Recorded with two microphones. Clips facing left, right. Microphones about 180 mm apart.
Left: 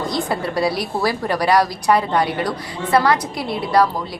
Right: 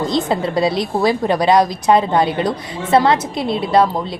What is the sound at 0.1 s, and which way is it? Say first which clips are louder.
A woman's voice: right 4 dB; 20° right (ahead or behind).